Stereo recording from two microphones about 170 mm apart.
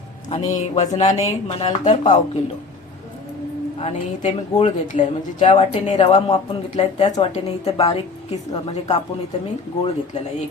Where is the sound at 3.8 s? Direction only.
40° left (ahead or behind).